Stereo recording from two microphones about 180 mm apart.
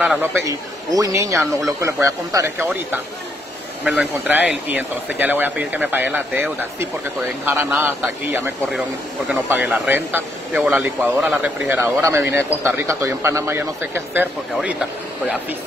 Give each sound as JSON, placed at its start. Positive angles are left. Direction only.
{"t": 0.0, "sound": "a man's voice", "side_deg": -5}